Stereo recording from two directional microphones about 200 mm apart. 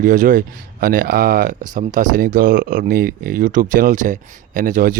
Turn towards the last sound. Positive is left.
turn(degrees=-45)  # may be behind; listen again after turning